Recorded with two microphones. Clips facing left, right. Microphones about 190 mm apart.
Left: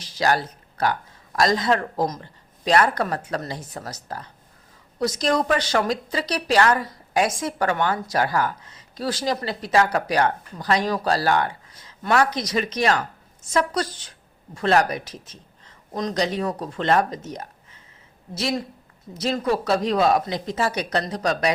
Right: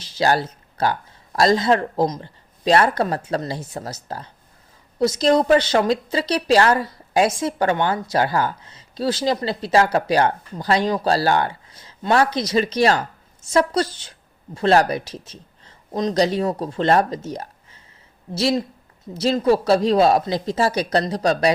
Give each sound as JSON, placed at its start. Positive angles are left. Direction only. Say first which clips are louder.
{"t": 0.0, "sound": "a woman's voice", "louder": "right 3 dB", "side_deg": -30}